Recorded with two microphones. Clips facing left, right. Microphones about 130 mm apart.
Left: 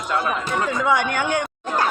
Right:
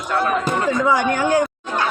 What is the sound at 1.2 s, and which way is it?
Speech, 35° right (ahead or behind).